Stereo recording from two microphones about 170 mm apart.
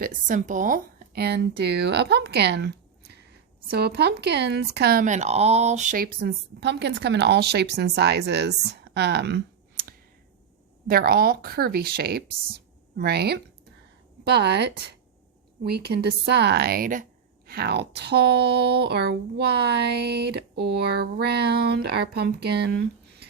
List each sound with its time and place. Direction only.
0.0 s speech: 50° right (ahead or behind); by 5.0 s 70° right (ahead or behind)
5.0 s speech: 45° right (ahead or behind); by 9.8 s 80° right
10.8 s speech: 60° right (ahead or behind)